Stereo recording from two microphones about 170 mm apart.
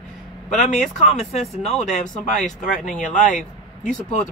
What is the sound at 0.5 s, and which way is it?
Speech, 45° left (ahead or behind).